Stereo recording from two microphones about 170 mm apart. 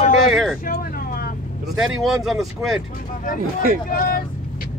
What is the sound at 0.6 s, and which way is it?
Vehicle, 60° left (ahead or behind).